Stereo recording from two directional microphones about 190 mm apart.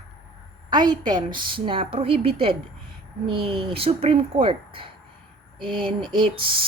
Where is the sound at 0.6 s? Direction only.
20° right (ahead or behind).